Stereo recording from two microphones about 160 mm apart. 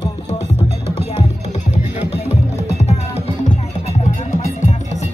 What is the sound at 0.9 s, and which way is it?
Music, 40° left (ahead or behind).